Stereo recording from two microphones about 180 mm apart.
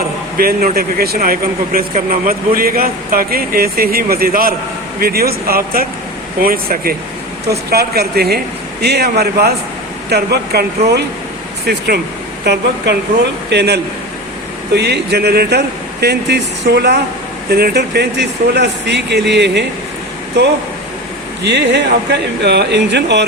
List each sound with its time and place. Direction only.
0.3 s speech: 55° right (ahead or behind)
21.4 s speech: 70° right (ahead or behind)